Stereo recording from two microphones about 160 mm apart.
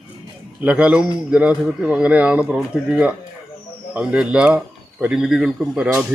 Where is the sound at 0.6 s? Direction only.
10° right (ahead or behind).